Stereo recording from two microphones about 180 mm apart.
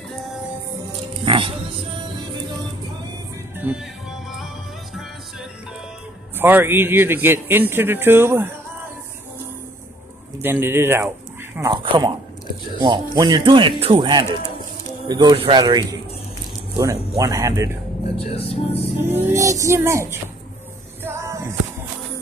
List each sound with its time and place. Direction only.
1.2 s music: 30° right (ahead or behind)
3.5 s music: 5° right (ahead or behind)
6.3 s a man's voice: 10° right (ahead or behind)
10.4 s a man's voice: 15° right (ahead or behind)
18.1 s speech: 35° left (ahead or behind)
19.0 s a man's voice: 15° right (ahead or behind)
21.0 s music: 15° right (ahead or behind)